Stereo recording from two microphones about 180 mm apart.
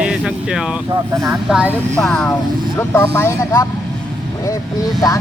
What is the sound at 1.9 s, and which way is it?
Speech, 5° left (ahead or behind).